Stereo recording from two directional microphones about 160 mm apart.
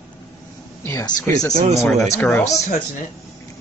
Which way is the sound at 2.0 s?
10° left (ahead or behind).